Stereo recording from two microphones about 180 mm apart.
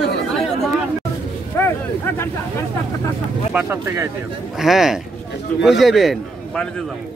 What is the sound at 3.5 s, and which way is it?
Speech, 10° right (ahead or behind).